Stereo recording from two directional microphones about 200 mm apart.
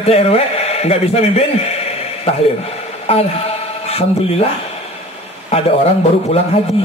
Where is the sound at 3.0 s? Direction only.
30° left (ahead or behind).